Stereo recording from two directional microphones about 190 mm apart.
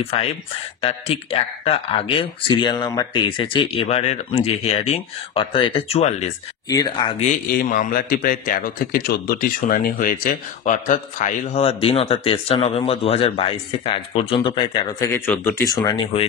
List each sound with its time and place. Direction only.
0.0 s a man's voice: 30° left (ahead or behind)
6.7 s speech: 20° left (ahead or behind)
7.2 s a man's voice: 50° left (ahead or behind); by 15.0 s 25° left (ahead or behind)
15.1 s speech: 10° left (ahead or behind)